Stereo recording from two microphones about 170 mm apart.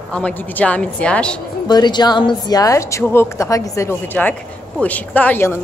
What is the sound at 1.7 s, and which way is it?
A woman's voice, 25° left (ahead or behind).